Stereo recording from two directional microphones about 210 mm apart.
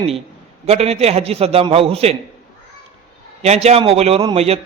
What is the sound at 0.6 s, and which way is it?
A man's voice, 30° right (ahead or behind).